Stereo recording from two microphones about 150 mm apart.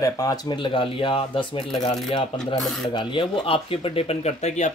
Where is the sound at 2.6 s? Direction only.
Centre (ahead or behind).